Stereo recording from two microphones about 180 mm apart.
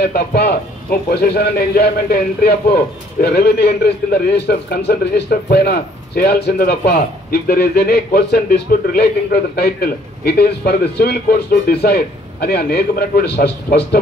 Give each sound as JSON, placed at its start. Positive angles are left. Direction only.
{"t": 0.0, "sound": "a man's voice", "side_deg": 60}